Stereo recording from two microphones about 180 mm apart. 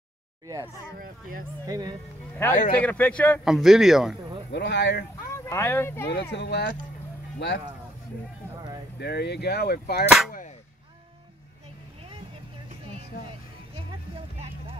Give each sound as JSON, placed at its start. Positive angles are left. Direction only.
{"t": 0.9, "sound": "speech", "side_deg": -50}
{"t": 1.7, "sound": "speech", "side_deg": -20}
{"t": 2.5, "sound": "speech", "side_deg": 45}
{"t": 2.8, "sound": "speech", "side_deg": 10}
{"t": 4.5, "sound": "speech", "side_deg": 70}
{"t": 5.3, "sound": "speech", "side_deg": 15}
{"t": 6.3, "sound": "speech", "side_deg": 70}
{"t": 8.9, "sound": "speech", "side_deg": 65}
{"t": 12.9, "sound": "music", "side_deg": -35}